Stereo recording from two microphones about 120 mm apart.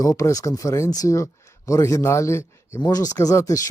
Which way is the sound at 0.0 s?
30° left (ahead or behind).